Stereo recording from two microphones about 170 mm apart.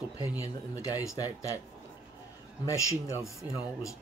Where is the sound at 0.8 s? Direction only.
20° left (ahead or behind).